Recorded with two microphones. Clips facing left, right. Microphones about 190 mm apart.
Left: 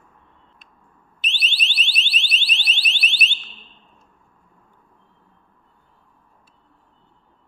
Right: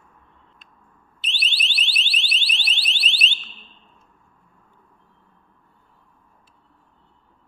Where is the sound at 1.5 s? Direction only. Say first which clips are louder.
Left 1 dB; 20° left (ahead or behind).